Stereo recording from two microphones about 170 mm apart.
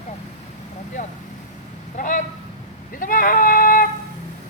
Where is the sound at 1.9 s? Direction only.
50° left (ahead or behind).